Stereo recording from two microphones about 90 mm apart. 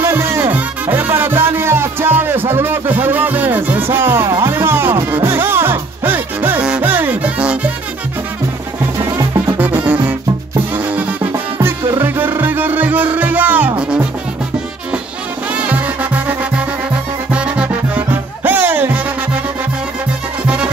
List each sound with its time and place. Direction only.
0.0 s music: 30° right (ahead or behind); by 7.7 s 15° right (ahead or behind)
9.2 s music: 40° right (ahead or behind)
9.6 s music: 15° right (ahead or behind)
15.5 s music: 15° right (ahead or behind)
20.4 s music: 10° right (ahead or behind)